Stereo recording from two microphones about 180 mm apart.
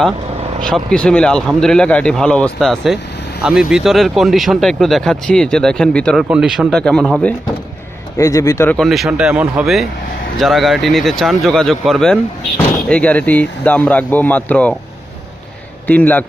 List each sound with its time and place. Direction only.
0.7 s speech: 5° left (ahead or behind)
8.2 s speech: 20° left (ahead or behind)
8.8 s speech: centre (ahead or behind)
15.9 s speech: 10° left (ahead or behind)